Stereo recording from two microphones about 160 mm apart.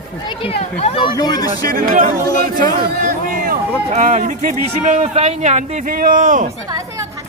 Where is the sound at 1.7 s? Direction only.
65° right (ahead or behind).